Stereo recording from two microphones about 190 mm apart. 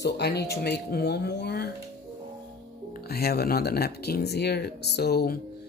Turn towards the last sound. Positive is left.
turn(degrees=55)  # may be behind; listen again after turning